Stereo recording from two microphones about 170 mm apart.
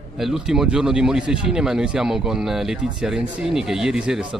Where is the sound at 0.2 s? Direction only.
5° right (ahead or behind).